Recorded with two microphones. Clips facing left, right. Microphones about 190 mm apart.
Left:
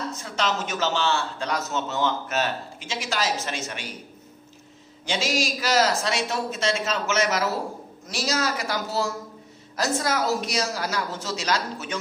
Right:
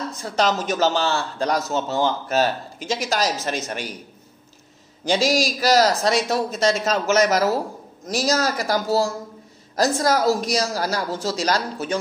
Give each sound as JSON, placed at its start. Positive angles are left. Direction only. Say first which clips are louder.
{"t": 0.2, "sound": "a man's voice", "louder": "right 7 dB", "side_deg": -35}
{"t": 5.0, "sound": "a man's voice", "louder": "right 6 dB", "side_deg": -40}